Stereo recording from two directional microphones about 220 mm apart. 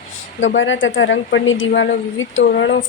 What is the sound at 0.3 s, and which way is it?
Speech, 60° left (ahead or behind).